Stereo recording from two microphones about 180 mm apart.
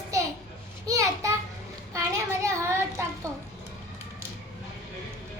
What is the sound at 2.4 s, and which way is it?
Child singing, 15° right (ahead or behind).